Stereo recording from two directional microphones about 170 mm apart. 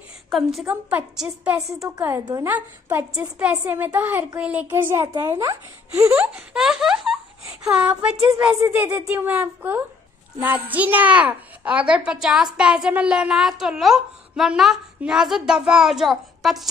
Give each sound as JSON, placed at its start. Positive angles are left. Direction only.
{"t": 0.3, "sound": "a child's voice", "side_deg": 0}
{"t": 1.7, "sound": "a woman's voice", "side_deg": -20}
{"t": 6.3, "sound": "a child's voice", "side_deg": -5}
{"t": 8.6, "sound": "a woman's voice", "side_deg": -15}